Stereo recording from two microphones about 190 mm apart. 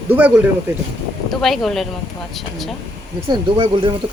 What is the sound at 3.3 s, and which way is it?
Speech, 25° right (ahead or behind).